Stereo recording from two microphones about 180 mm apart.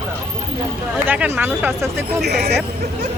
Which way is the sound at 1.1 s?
10° right (ahead or behind).